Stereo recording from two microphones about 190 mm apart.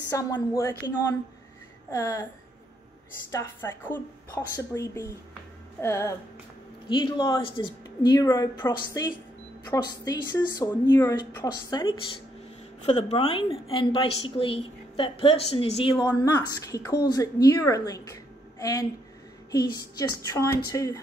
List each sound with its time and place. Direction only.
0.1 s a woman's voice: 20° left (ahead or behind)
3.3 s a woman's voice: 15° left (ahead or behind)